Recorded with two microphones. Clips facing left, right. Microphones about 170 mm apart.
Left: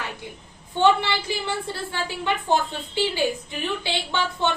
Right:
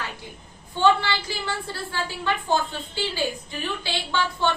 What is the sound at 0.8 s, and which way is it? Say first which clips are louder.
A woman's voice: left 1 dB; 20° left (ahead or behind).